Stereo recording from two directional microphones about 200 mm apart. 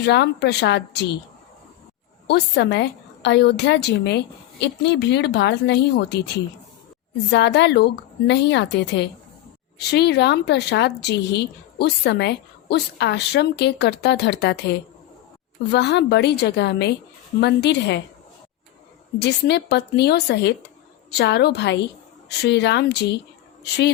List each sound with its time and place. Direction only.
0.0 s speech: 55° left (ahead or behind)
2.2 s speech: 55° left (ahead or behind)
15.7 s speech: 55° left (ahead or behind)
19.2 s speech: 55° left (ahead or behind)